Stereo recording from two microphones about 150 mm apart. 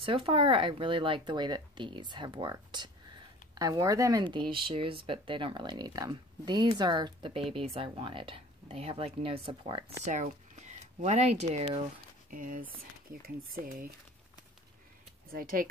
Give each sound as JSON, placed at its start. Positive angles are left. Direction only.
{"t": 0.0, "sound": "speech", "side_deg": -35}
{"t": 10.0, "sound": "speech", "side_deg": -55}
{"t": 12.3, "sound": "speech", "side_deg": -65}
{"t": 15.2, "sound": "speech", "side_deg": -70}